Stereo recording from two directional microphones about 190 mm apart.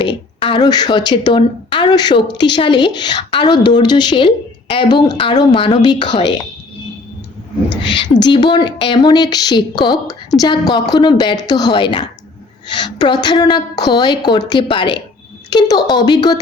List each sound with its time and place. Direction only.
0.4 s a woman's voice: 25° left (ahead or behind)
8.2 s a woman's voice: 25° left (ahead or behind)